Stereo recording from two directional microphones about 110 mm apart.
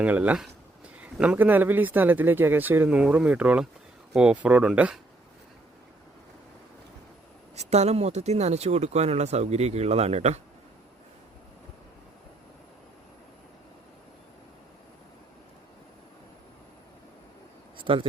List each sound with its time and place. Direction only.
0.0 s a man's voice: 15° right (ahead or behind)
7.5 s speech: 80° right
17.7 s a sound: 50° right (ahead or behind)